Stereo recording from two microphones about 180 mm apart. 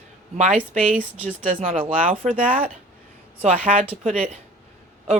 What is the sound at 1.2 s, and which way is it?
Speech, 35° right (ahead or behind).